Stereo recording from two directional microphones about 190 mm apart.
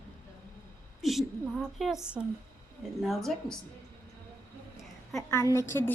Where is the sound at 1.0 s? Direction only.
Centre (ahead or behind).